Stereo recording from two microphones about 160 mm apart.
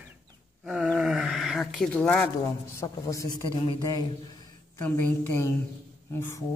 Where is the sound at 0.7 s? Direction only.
5° right (ahead or behind).